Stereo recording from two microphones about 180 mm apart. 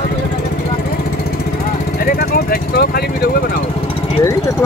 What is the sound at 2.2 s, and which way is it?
Speech, 60° left (ahead or behind).